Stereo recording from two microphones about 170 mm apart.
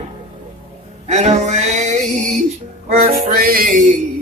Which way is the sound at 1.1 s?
45° right (ahead or behind).